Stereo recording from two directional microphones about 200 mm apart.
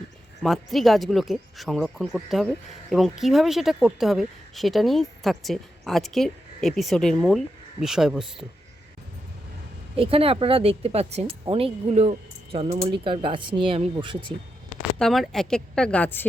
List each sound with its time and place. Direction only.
0.4 s speech: centre (ahead or behind)
10.0 s speech: 30° right (ahead or behind)
14.8 s speech: centre (ahead or behind)